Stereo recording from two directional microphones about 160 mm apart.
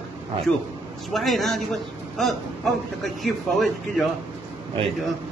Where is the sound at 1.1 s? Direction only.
Centre (ahead or behind).